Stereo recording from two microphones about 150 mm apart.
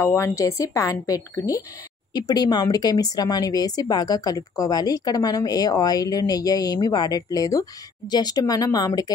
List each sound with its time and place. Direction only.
0.0 s speech: 20° left (ahead or behind)